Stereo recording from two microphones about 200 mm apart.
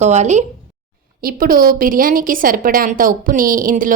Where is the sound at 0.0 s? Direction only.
35° right (ahead or behind).